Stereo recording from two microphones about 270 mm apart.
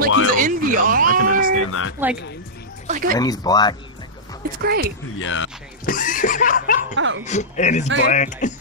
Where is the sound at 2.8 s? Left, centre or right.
Right.